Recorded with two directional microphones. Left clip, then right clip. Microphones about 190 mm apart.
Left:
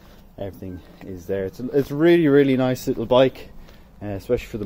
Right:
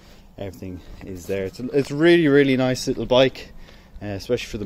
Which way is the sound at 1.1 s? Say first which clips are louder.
Left 1 dB; 15° right (ahead or behind).